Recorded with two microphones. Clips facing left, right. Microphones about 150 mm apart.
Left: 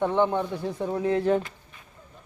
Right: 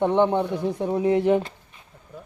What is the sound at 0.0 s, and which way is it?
Speech, 20° right (ahead or behind).